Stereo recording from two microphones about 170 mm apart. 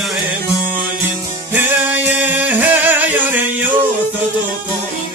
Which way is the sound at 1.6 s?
10° right (ahead or behind).